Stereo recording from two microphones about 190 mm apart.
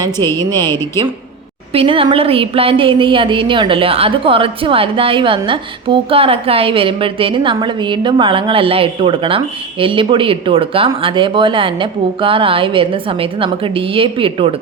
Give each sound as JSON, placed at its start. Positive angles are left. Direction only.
{"t": 0.2, "sound": "speech", "side_deg": 15}
{"t": 1.7, "sound": "a woman's voice", "side_deg": -30}